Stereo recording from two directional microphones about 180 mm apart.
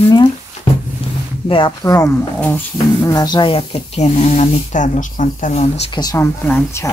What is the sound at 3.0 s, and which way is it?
Speech, 20° left (ahead or behind).